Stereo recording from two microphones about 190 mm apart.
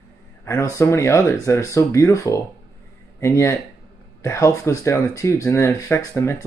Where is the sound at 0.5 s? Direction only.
15° left (ahead or behind).